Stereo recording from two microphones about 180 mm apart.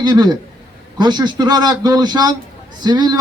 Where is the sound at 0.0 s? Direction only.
25° right (ahead or behind).